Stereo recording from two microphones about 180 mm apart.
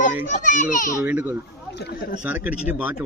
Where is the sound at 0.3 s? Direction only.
45° left (ahead or behind).